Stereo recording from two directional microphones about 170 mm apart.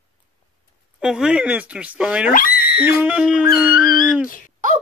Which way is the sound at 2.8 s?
5° right (ahead or behind).